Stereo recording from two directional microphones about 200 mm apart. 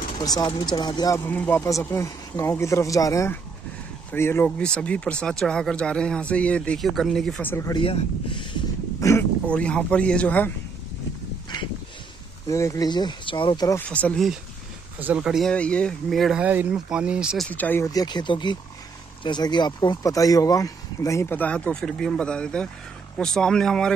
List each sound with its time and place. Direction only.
0.1 s speech: 20° left (ahead or behind)
7.8 s speech: 25° left (ahead or behind)
9.0 s speech: 10° left (ahead or behind)
12.4 s speech: 15° left (ahead or behind)
13.7 s speech: 5° left (ahead or behind)
15.0 s speech: 5° right (ahead or behind)
17.5 s speech: 10° left (ahead or behind)